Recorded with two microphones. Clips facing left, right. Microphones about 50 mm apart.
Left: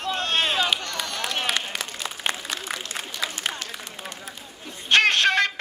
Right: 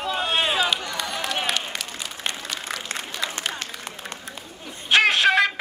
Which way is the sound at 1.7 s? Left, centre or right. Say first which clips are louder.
Left 1 dB; centre.